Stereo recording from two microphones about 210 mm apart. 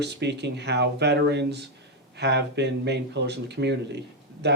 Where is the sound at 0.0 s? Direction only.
55° right (ahead or behind).